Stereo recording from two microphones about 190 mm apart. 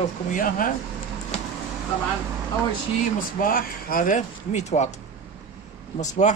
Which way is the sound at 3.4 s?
50° left (ahead or behind).